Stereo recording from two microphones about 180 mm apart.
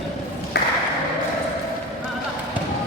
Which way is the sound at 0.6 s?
60° left (ahead or behind).